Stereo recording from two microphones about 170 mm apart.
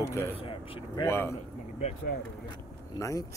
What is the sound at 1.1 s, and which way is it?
Speech, 15° left (ahead or behind).